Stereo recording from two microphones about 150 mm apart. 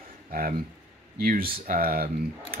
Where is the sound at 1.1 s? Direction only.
75° right (ahead or behind).